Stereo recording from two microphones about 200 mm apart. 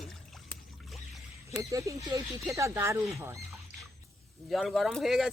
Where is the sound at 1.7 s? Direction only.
15° right (ahead or behind).